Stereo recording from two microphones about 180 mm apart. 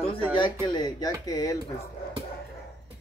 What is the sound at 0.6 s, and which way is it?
Speech, 25° left (ahead or behind).